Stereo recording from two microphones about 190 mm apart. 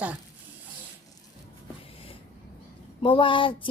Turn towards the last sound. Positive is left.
turn(degrees=25)  # may be behind; listen again after turning